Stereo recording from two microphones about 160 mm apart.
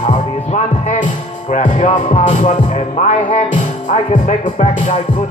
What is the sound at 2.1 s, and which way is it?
Speech, 45° left (ahead or behind).